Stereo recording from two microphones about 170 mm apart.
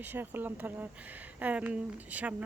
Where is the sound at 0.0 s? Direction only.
10° right (ahead or behind).